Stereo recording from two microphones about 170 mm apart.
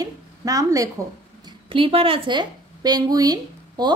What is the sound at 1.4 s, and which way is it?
A woman's voice, 30° right (ahead or behind).